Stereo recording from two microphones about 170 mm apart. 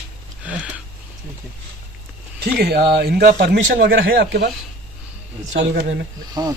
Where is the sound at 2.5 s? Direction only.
70° right (ahead or behind).